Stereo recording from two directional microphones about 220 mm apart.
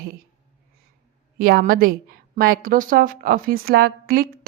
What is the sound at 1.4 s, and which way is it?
A woman's voice, 40° right (ahead or behind).